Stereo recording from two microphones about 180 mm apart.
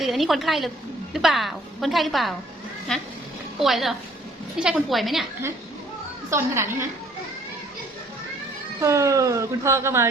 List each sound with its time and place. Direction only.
0.0 s a woman's voice: centre (ahead or behind)
6.3 s speech: 15° right (ahead or behind)
8.8 s speech: 15° right (ahead or behind)